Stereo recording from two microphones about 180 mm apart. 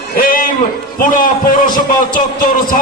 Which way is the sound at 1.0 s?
50° left (ahead or behind).